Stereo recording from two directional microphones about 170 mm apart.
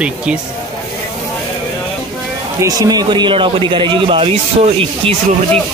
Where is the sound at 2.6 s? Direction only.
20° right (ahead or behind).